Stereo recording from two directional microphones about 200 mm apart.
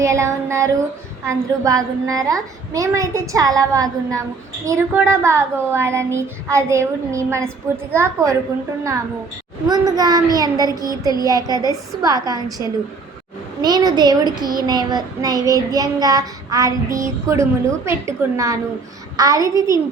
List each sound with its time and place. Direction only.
0.0 s a woman's voice: 15° right (ahead or behind)